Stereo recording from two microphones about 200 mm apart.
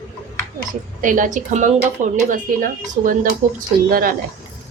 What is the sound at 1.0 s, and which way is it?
A woman's voice, 40° right (ahead or behind).